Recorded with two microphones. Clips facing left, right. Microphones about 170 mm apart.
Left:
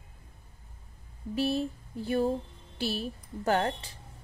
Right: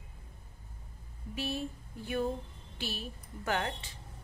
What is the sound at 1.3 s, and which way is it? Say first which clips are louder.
A woman's voice: left 8 dB; 35° left (ahead or behind).